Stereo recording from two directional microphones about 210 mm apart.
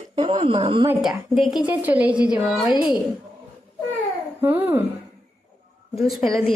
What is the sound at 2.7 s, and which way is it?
Speech, 20° left (ahead or behind).